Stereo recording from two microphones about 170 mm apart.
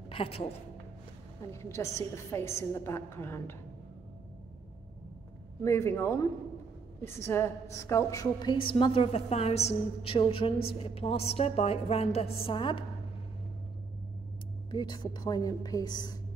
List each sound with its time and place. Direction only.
0.1 s a man's voice: 35° left (ahead or behind)
1.5 s a woman's voice: 15° left (ahead or behind)
5.6 s a woman's voice: 15° left (ahead or behind); by 12.8 s 30° left (ahead or behind)
14.7 s a woman's voice: 25° left (ahead or behind)